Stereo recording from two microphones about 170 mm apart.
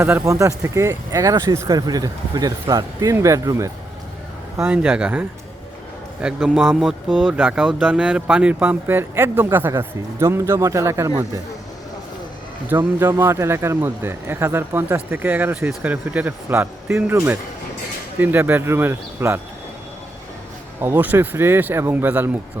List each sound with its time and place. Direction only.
0.0 s speech: 15° right (ahead or behind)
6.2 s a man's voice: centre (ahead or behind)
7.3 s speech: 10° right (ahead or behind)
12.7 s speech: 15° right (ahead or behind)
20.8 s speech: 10° right (ahead or behind)